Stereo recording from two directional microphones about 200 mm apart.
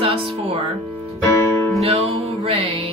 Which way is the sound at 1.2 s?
15° left (ahead or behind).